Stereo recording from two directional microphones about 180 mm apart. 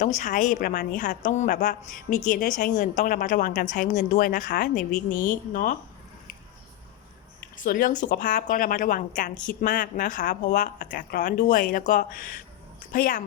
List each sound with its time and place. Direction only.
0.2 s speech: 45° left (ahead or behind)
7.5 s speech: 50° left (ahead or behind)